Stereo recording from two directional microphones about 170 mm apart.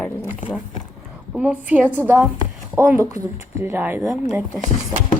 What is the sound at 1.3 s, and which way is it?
Speech, 5° right (ahead or behind).